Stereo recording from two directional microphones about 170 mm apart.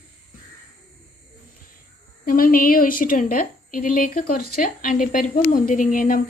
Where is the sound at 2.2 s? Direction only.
55° left (ahead or behind).